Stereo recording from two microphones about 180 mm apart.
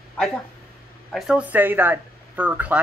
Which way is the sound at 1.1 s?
5° right (ahead or behind).